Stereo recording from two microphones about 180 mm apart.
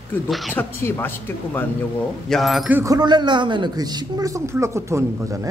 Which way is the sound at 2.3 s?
Centre (ahead or behind).